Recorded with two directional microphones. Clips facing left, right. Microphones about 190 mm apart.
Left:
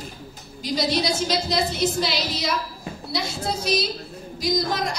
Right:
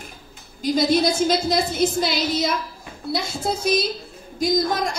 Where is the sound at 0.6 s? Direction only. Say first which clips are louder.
Right 5 dB; 50° right (ahead or behind).